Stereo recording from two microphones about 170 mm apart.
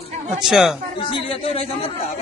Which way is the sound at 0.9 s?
35° left (ahead or behind).